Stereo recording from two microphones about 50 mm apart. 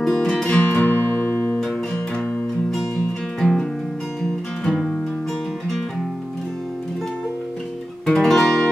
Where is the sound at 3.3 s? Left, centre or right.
Centre.